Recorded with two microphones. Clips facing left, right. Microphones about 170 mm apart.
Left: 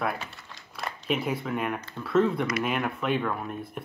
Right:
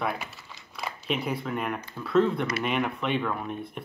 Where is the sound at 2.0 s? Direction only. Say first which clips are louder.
Even; centre (ahead or behind).